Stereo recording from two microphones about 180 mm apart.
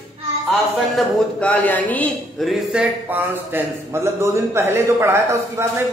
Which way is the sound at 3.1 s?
10° right (ahead or behind).